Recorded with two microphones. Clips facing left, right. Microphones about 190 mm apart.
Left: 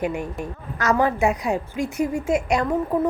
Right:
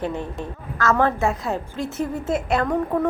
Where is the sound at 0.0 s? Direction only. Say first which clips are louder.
Left 1 dB; 10° left (ahead or behind).